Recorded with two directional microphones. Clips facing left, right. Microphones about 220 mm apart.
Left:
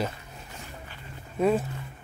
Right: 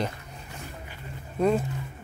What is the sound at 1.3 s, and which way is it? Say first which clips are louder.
Speech: even; 5° left (ahead or behind).